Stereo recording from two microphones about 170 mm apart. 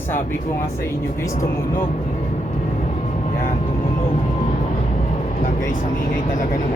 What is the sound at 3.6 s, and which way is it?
Vehicle, 35° left (ahead or behind).